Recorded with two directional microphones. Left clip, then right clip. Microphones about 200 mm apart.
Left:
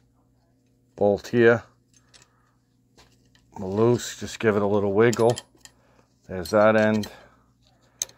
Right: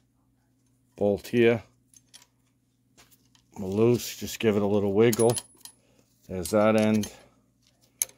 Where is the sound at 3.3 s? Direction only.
15° right (ahead or behind).